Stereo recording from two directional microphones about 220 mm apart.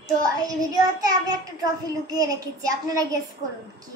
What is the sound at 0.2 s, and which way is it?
A child's voice, 15° right (ahead or behind).